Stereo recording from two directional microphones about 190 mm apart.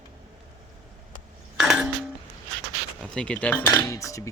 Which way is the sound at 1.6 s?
Centre (ahead or behind).